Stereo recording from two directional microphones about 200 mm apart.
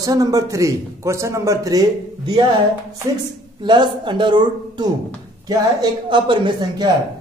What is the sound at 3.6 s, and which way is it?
A man's voice, 20° right (ahead or behind).